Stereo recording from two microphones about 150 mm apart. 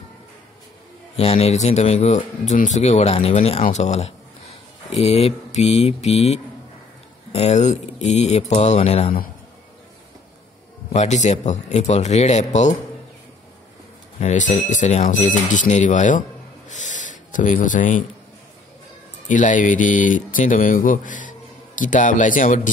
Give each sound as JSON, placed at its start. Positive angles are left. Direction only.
{"t": 1.1, "sound": "speech", "side_deg": 40}
{"t": 10.9, "sound": "speech", "side_deg": 50}
{"t": 14.2, "sound": "speech", "side_deg": 50}
{"t": 19.2, "sound": "speech", "side_deg": 55}